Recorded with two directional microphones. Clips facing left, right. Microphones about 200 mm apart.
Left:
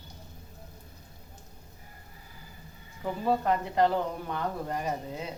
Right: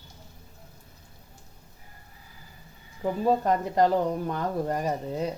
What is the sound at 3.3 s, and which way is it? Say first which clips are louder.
Speech: right 2 dB; 40° right (ahead or behind).